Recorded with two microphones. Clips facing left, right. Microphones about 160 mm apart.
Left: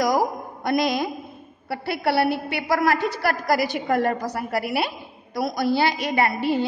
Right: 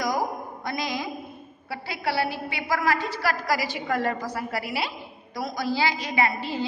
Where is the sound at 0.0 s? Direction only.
75° left (ahead or behind).